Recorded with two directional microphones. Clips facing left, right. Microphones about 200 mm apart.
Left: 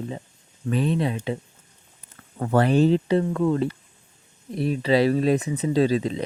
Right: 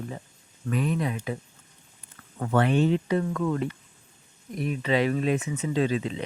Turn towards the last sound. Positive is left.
turn(degrees=35)  # may be behind; listen again after turning